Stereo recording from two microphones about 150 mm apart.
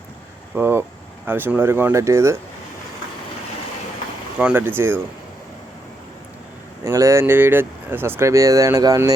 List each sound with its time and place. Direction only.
0.5 s speech: 15° right (ahead or behind)
4.4 s speech: 10° right (ahead or behind)
6.8 s speech: 20° right (ahead or behind)